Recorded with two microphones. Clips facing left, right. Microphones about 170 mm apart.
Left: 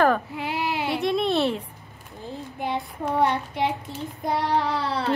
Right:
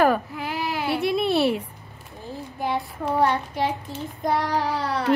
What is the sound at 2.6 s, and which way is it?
Child singing, 20° left (ahead or behind).